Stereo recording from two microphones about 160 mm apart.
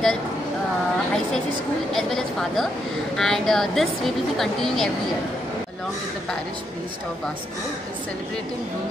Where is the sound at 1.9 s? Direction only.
Centre (ahead or behind).